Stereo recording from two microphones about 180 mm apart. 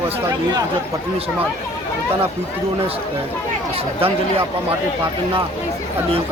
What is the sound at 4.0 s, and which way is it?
Speech, 30° right (ahead or behind).